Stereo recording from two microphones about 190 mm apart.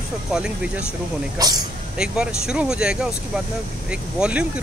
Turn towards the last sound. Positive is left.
turn(degrees=-5)  # may be behind; listen again after turning